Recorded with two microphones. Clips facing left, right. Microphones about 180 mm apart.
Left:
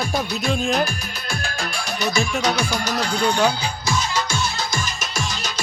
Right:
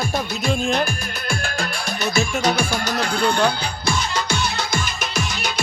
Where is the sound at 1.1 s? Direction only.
55° right (ahead or behind).